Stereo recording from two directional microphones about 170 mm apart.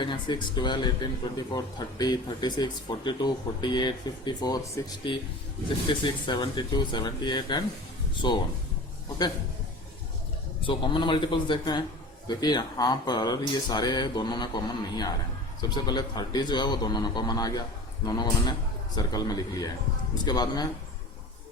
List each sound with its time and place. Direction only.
0.0 s speech: 25° left (ahead or behind)
10.7 s speech: 30° left (ahead or behind)